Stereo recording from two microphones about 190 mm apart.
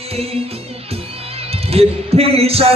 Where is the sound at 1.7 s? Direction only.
30° right (ahead or behind).